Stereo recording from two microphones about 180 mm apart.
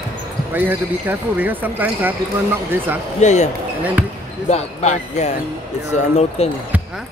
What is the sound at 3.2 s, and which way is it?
Speech, 40° left (ahead or behind).